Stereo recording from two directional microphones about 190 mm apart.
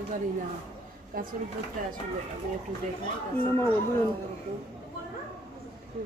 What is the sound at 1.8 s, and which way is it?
Speech, 45° right (ahead or behind).